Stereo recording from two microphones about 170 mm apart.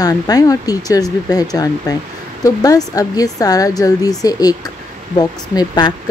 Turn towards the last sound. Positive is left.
turn(degrees=25)  # may be behind; listen again after turning